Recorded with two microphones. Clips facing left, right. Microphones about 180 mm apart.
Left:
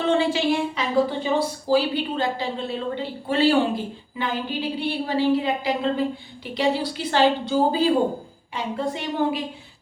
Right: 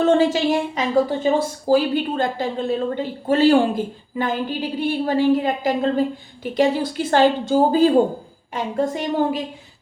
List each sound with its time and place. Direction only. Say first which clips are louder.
0.0 s a woman's voice: right 4 dB; 45° right (ahead or behind)